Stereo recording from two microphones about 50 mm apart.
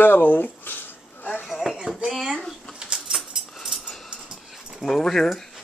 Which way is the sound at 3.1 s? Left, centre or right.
Centre.